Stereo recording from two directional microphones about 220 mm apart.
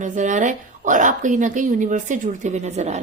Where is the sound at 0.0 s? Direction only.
35° right (ahead or behind).